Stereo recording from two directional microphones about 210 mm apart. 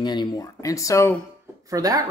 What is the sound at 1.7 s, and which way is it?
Speech, 15° right (ahead or behind).